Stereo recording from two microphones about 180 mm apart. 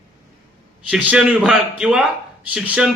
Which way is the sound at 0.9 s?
5° right (ahead or behind).